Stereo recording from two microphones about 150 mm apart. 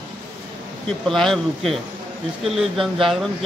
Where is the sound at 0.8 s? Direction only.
5° left (ahead or behind).